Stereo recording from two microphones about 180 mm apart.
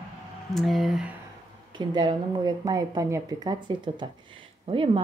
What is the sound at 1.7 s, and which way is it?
A woman's voice, 25° right (ahead or behind).